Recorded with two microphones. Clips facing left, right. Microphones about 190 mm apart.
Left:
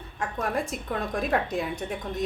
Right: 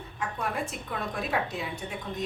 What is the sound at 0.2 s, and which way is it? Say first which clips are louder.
A woman's voice: left 3 dB; 45° left (ahead or behind).